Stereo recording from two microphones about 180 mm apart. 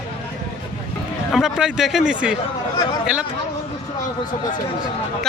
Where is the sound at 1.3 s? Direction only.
Centre (ahead or behind).